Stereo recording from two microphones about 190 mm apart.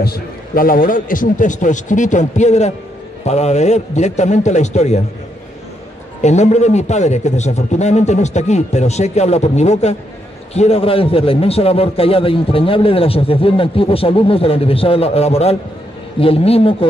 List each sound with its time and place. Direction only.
0.0 s a man's voice: 50° left (ahead or behind)
6.2 s a man's voice: 35° left (ahead or behind)